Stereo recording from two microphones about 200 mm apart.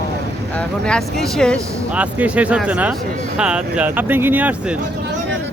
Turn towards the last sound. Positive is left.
turn(degrees=-10)  # may be behind; listen again after turning